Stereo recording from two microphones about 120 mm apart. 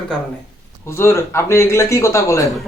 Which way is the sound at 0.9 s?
20° left (ahead or behind).